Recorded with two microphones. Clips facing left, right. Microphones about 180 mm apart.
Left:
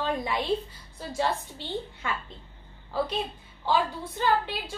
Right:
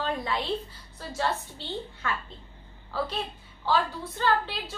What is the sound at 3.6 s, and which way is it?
A woman's voice, 15° left (ahead or behind).